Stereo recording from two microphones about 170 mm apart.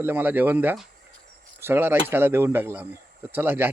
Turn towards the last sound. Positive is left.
turn(degrees=-15)  # may be behind; listen again after turning